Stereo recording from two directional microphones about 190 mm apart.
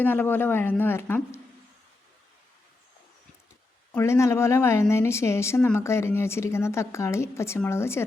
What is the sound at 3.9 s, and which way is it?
A woman's voice, 15° left (ahead or behind).